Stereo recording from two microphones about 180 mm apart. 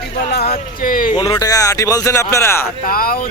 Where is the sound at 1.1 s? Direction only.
20° left (ahead or behind).